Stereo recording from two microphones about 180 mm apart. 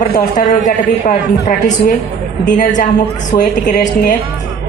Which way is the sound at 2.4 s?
45° left (ahead or behind).